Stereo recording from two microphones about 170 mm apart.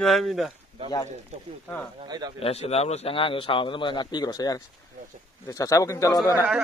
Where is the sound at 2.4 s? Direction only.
40° left (ahead or behind); by 6.4 s 20° left (ahead or behind).